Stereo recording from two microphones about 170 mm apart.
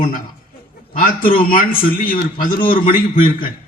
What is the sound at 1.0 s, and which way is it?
A man's voice, 55° left (ahead or behind).